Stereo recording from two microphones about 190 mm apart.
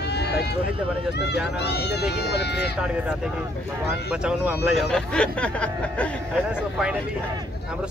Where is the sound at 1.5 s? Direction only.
60° left (ahead or behind).